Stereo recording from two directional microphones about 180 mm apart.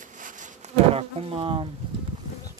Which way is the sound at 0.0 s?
45° right (ahead or behind).